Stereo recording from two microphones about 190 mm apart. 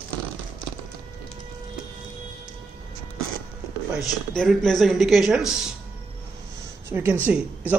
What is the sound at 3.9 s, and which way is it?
Speech, 5° left (ahead or behind).